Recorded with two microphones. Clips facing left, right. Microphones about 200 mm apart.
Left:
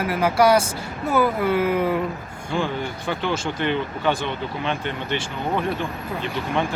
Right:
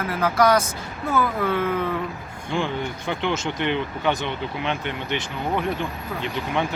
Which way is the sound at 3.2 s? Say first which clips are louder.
Even; 20° right (ahead or behind).